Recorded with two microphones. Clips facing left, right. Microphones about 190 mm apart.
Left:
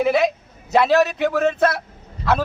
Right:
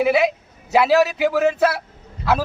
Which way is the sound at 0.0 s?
5° right (ahead or behind).